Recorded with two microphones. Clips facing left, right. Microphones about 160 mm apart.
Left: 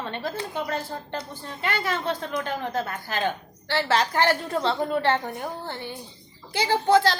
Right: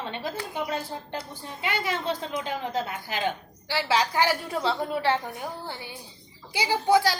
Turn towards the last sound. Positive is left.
turn(degrees=-10)  # may be behind; listen again after turning